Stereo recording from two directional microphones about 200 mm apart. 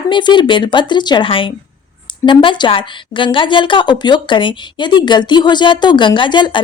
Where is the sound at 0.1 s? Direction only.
25° left (ahead or behind).